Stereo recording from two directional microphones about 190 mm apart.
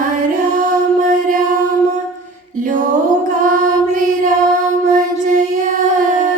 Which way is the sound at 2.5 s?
45° right (ahead or behind).